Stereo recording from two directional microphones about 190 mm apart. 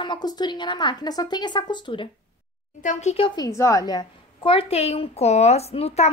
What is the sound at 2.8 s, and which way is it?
A woman's voice, 40° left (ahead or behind).